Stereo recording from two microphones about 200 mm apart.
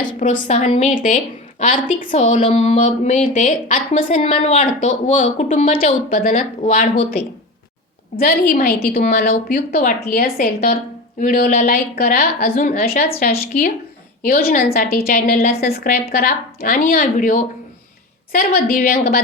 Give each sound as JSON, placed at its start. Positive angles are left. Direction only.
{"t": 0.2, "sound": "speech", "side_deg": 40}
{"t": 6.9, "sound": "speech", "side_deg": 25}
{"t": 8.2, "sound": "a woman's voice", "side_deg": 50}